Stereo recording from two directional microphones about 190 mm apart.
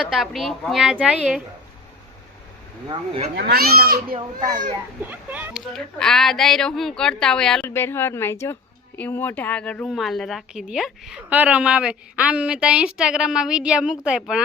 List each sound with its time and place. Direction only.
0.0 s a woman's voice: centre (ahead or behind)
3.3 s a child's voice: 55° right (ahead or behind)
4.1 s speech: 25° right (ahead or behind)
5.0 s speech: 10° right (ahead or behind)
5.7 s a woman's voice: 5° left (ahead or behind)